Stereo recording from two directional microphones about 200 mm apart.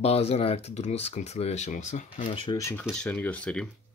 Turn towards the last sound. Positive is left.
turn(degrees=5)  # may be behind; listen again after turning